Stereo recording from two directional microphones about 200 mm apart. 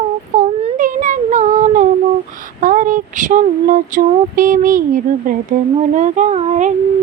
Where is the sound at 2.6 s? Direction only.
40° right (ahead or behind).